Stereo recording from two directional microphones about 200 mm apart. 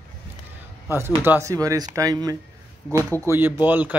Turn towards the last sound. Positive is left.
turn(degrees=-10)  # may be behind; listen again after turning